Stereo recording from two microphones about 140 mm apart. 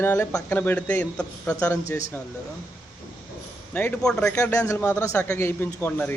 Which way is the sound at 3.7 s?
15° left (ahead or behind).